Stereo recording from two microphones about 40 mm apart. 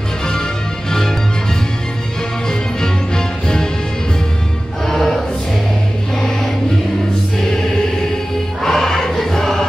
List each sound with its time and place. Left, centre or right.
2.8 s music: centre
4.8 s choir: centre
8.6 s choir: centre